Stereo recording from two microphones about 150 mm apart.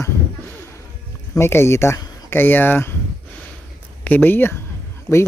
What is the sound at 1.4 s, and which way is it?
Speech, 15° left (ahead or behind).